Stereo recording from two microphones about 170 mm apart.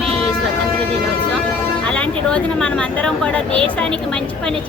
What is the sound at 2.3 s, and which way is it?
Speech, 5° left (ahead or behind).